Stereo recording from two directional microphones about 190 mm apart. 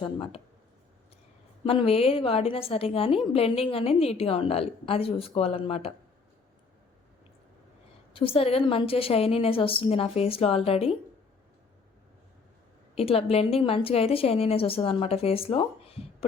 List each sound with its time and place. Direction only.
0.0 s a woman's voice: 30° left (ahead or behind)
1.6 s a woman's voice: 30° left (ahead or behind)
8.1 s a woman's voice: 30° left (ahead or behind)
13.0 s a woman's voice: 30° left (ahead or behind)